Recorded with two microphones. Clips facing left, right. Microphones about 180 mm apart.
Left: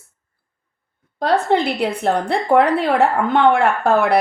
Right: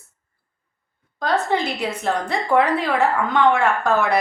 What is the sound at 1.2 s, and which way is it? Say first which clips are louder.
A woman's voice: left 4 dB; 60° left (ahead or behind).